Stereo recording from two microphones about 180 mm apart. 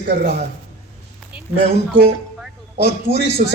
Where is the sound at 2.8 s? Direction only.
65° left (ahead or behind).